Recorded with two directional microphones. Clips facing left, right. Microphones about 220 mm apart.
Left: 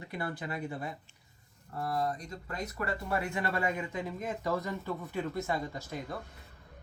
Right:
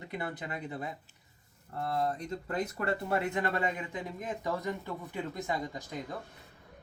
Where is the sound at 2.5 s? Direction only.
30° right (ahead or behind).